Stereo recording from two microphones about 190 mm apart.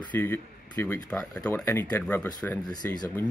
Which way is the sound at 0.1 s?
10° left (ahead or behind).